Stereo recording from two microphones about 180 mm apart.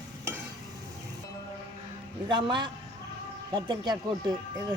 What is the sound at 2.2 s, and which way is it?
Speech, 25° right (ahead or behind).